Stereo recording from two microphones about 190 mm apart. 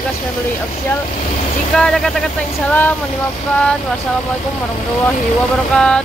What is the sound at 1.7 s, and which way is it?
Speech, centre (ahead or behind).